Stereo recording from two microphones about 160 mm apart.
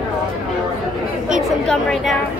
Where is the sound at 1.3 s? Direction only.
Centre (ahead or behind).